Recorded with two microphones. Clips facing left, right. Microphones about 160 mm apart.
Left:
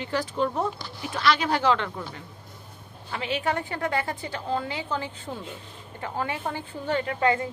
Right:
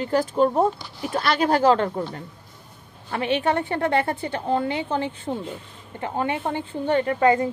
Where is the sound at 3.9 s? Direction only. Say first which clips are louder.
Right 6 dB; 60° right (ahead or behind).